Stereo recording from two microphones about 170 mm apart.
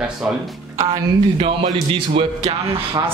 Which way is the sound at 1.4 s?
35° right (ahead or behind).